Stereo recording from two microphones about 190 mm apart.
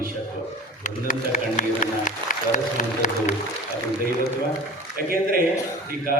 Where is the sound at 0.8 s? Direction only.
45° left (ahead or behind).